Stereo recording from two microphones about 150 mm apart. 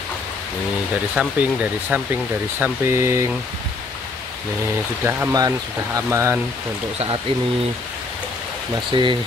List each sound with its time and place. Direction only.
1.1 s speech: 10° right (ahead or behind)
5.0 s speech: 20° right (ahead or behind)
8.9 s speech: 35° right (ahead or behind)